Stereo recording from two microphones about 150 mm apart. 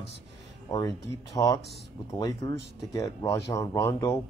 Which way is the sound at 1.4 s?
20° left (ahead or behind).